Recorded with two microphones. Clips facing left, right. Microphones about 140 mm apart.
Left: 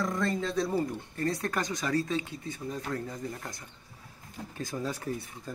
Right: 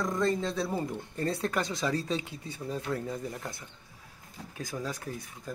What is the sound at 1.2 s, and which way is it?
Speech, 30° right (ahead or behind).